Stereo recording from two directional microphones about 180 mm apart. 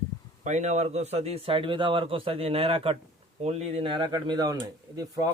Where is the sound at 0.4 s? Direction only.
40° right (ahead or behind).